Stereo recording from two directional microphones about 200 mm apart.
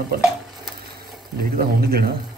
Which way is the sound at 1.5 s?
50° right (ahead or behind).